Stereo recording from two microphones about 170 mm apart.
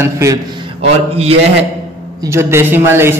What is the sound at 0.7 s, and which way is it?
Speech, 35° right (ahead or behind).